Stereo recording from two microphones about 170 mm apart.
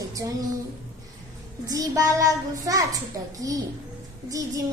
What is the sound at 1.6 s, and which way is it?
Speech, 20° right (ahead or behind).